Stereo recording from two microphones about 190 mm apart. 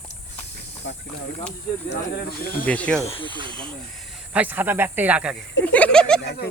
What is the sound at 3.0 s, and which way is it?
Speech, 30° left (ahead or behind).